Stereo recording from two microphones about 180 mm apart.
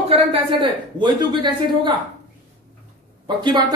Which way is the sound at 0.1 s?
35° right (ahead or behind).